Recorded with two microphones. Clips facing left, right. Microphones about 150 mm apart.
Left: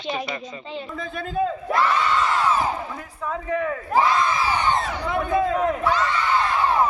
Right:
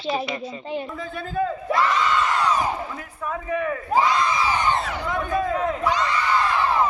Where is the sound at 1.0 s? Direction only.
15° left (ahead or behind).